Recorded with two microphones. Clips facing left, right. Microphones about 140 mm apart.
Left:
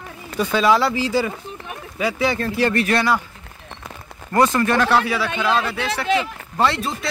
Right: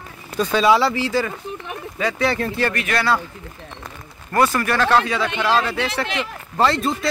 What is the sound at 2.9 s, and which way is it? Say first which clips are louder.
Speech: left 1 dB; 15° left (ahead or behind).